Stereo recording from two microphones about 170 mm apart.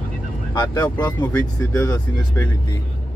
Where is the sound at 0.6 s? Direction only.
20° left (ahead or behind).